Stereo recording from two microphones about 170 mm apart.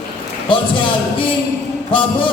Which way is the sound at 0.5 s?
30° left (ahead or behind).